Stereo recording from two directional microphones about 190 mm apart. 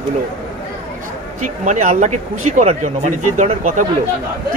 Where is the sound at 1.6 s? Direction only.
40° right (ahead or behind).